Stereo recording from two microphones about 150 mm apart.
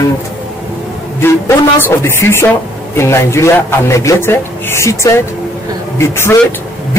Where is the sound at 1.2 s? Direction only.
15° left (ahead or behind).